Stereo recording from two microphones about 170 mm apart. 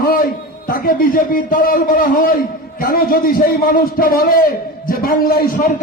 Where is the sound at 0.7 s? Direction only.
55° left (ahead or behind).